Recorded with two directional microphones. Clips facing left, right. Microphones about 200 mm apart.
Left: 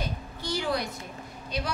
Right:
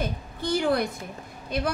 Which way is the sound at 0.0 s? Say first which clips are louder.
Right 5 dB; 50° right (ahead or behind).